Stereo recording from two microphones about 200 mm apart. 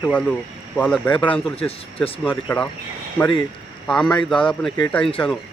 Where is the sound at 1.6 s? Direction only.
30° left (ahead or behind).